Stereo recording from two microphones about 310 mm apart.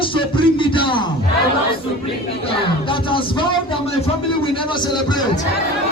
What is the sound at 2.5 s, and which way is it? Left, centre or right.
Speech, centre.